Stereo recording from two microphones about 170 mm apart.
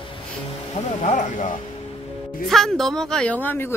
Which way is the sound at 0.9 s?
45° left (ahead or behind).